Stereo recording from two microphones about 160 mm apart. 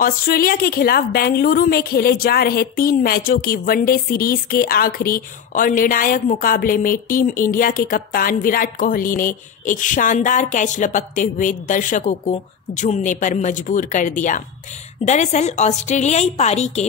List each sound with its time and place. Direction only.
0.0 s a woman's voice: 65° left (ahead or behind); by 16.8 s 45° left (ahead or behind)